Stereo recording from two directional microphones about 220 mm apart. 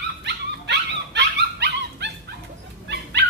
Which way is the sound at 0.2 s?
50° right (ahead or behind).